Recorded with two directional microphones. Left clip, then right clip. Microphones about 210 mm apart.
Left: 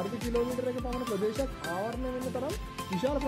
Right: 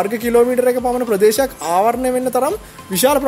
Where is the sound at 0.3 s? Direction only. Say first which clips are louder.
Right 18 dB; 50° right (ahead or behind).